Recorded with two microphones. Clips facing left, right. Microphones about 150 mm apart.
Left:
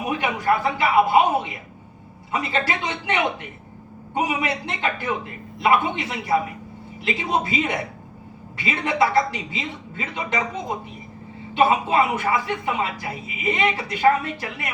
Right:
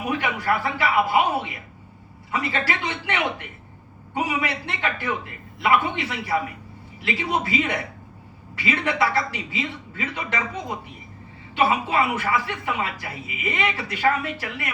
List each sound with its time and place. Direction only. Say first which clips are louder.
0.1 s speech: left 2 dB; 20° left (ahead or behind)
4.3 s speech: left 1 dB; 20° left (ahead or behind)
11.5 s speech: left 3 dB; 20° left (ahead or behind)